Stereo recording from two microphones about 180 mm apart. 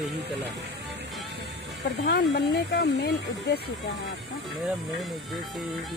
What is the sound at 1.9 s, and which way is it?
Speech, 65° left (ahead or behind).